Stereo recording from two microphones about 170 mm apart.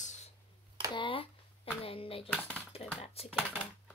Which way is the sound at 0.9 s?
30° left (ahead or behind).